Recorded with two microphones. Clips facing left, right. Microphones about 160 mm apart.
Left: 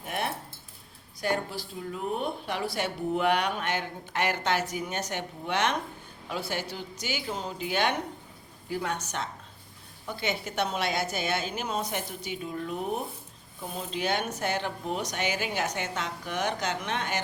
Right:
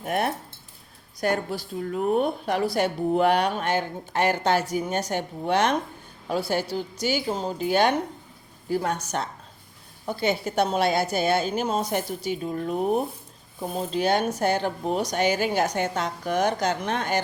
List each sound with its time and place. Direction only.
0.0 s cutlery: 50° right (ahead or behind)
1.2 s speech: 50° right (ahead or behind)